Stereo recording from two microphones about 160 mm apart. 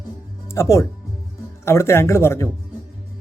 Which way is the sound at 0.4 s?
15° left (ahead or behind).